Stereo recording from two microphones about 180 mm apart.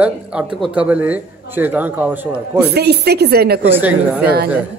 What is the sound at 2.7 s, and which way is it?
Speech, 65° right (ahead or behind).